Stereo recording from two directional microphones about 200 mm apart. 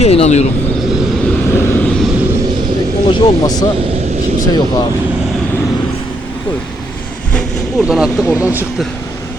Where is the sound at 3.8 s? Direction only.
30° right (ahead or behind).